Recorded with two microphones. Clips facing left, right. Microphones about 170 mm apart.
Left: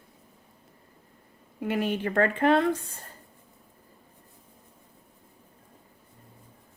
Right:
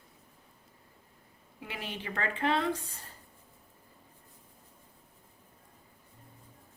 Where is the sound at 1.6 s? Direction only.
50° left (ahead or behind).